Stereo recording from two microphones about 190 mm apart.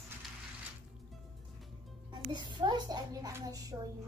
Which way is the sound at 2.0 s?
25° right (ahead or behind).